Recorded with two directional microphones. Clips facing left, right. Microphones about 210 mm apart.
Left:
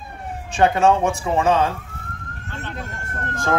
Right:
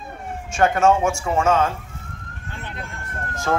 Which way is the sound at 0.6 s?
15° left (ahead or behind).